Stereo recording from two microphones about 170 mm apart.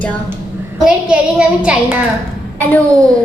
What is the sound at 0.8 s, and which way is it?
Speech, 5° right (ahead or behind).